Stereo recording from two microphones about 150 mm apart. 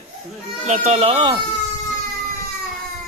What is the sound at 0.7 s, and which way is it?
Speech, 50° right (ahead or behind).